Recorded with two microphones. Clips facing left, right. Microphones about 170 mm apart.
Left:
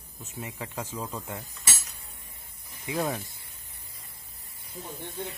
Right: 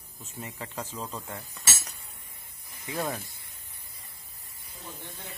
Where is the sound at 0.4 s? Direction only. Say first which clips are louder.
Left 1 dB; 10° left (ahead or behind).